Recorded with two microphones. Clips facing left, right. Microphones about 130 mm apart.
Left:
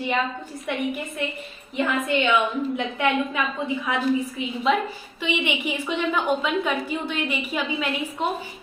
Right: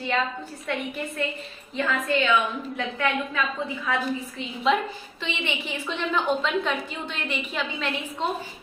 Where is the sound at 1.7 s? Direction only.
20° left (ahead or behind).